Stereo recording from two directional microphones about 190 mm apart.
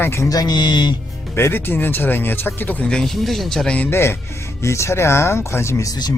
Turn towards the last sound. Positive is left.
turn(degrees=20)  # may be behind; listen again after turning